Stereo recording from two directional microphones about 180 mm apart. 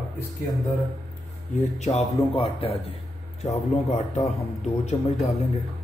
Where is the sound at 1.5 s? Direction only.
40° left (ahead or behind).